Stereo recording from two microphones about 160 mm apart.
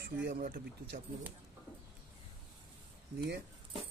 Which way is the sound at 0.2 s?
65° right (ahead or behind).